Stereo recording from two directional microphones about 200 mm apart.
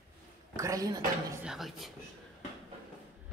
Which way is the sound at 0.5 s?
15° right (ahead or behind).